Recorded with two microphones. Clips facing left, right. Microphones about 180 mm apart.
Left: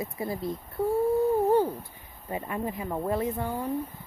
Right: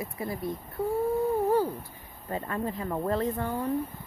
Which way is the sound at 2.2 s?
15° left (ahead or behind).